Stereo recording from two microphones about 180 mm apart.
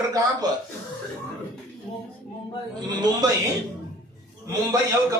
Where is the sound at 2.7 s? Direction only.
25° right (ahead or behind).